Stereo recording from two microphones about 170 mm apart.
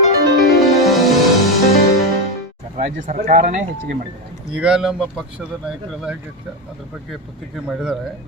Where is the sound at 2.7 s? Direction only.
45° right (ahead or behind).